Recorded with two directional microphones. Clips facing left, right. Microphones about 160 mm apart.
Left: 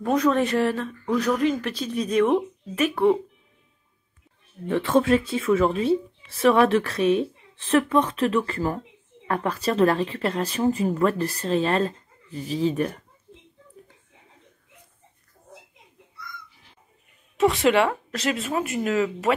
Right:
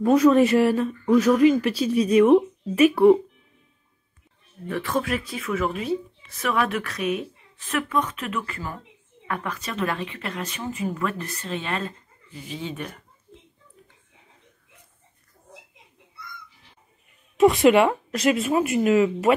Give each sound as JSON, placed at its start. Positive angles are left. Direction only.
{"t": 0.0, "sound": "a woman's voice", "side_deg": -5}
{"t": 4.6, "sound": "speech", "side_deg": 25}
{"t": 17.4, "sound": "a woman's voice", "side_deg": -15}